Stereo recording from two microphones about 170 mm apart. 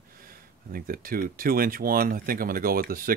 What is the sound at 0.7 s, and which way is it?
Speech, 55° right (ahead or behind).